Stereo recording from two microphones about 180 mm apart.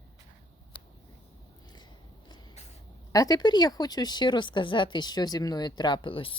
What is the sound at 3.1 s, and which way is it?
Speech, 20° left (ahead or behind).